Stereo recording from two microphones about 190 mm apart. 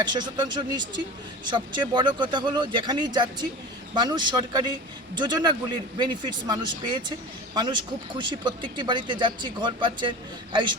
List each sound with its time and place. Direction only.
0.0 s speech: 25° right (ahead or behind)